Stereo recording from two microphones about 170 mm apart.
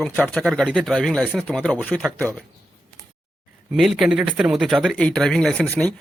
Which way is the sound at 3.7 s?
Centre (ahead or behind).